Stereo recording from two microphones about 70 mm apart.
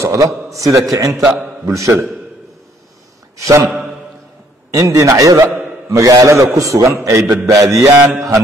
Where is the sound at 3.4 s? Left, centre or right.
Right.